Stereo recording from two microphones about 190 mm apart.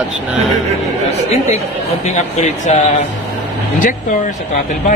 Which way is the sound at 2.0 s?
35° left (ahead or behind).